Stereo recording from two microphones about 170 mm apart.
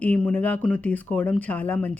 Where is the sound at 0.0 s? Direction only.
10° left (ahead or behind).